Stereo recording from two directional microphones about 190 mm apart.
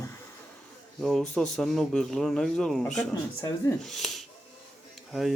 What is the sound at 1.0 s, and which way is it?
A man's voice, centre (ahead or behind).